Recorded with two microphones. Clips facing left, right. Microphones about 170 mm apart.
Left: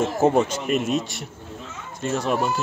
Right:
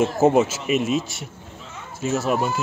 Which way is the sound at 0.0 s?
5° right (ahead or behind).